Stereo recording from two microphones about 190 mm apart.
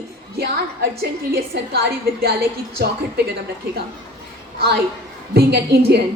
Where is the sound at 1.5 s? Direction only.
60° right (ahead or behind).